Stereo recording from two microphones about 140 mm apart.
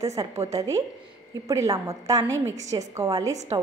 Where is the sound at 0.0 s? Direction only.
25° right (ahead or behind).